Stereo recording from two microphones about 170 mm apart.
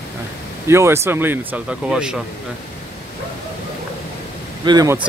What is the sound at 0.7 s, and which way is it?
Speech, 15° right (ahead or behind).